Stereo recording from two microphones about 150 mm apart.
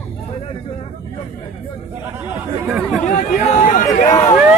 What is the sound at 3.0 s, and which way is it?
Chatter, 55° left (ahead or behind).